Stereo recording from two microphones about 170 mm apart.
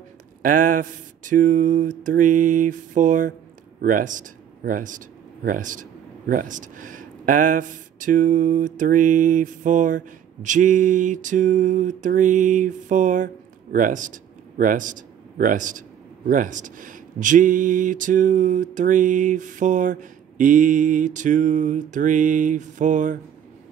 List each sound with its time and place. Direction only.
0.4 s speech: 50° right (ahead or behind)